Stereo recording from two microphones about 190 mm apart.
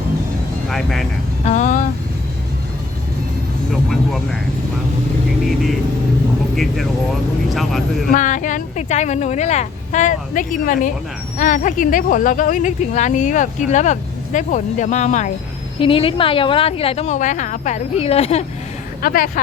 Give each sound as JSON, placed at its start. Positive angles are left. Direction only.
{"t": 0.7, "sound": "speech", "side_deg": 0}
{"t": 1.5, "sound": "speech", "side_deg": 40}
{"t": 3.8, "sound": "speech", "side_deg": 0}
{"t": 7.5, "sound": "speech", "side_deg": 0}
{"t": 8.1, "sound": "speech", "side_deg": 40}
{"t": 15.8, "sound": "speech", "side_deg": 30}
{"t": 19.0, "sound": "a woman's voice", "side_deg": 50}